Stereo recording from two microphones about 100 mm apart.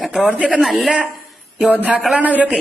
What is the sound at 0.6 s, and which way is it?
A man's voice, centre (ahead or behind).